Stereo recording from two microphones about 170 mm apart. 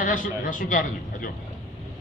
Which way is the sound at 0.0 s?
50° left (ahead or behind).